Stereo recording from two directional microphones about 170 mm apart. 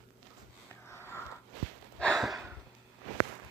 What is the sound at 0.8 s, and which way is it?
Sniff, 15° left (ahead or behind).